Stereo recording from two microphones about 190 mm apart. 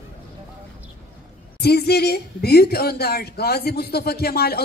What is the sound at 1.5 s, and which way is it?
A woman's voice, 55° left (ahead or behind).